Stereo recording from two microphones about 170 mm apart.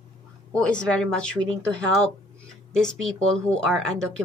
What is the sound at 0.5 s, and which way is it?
Speech, 5° left (ahead or behind).